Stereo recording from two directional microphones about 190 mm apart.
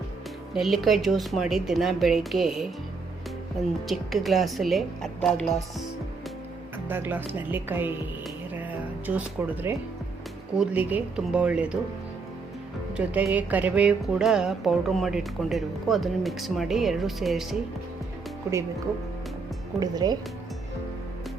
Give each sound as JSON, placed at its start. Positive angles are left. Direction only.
{"t": 0.5, "sound": "a woman's voice", "side_deg": 0}
{"t": 3.8, "sound": "a woman's voice", "side_deg": 0}
{"t": 6.8, "sound": "speech", "side_deg": -10}
{"t": 9.0, "sound": "speech", "side_deg": -10}
{"t": 13.1, "sound": "a woman's voice", "side_deg": -10}
{"t": 19.8, "sound": "speech", "side_deg": -20}